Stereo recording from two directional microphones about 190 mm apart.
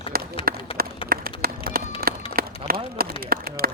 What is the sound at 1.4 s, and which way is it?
Run, 50° right (ahead or behind).